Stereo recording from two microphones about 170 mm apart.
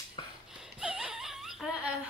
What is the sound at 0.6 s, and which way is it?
Laughter, 5° right (ahead or behind).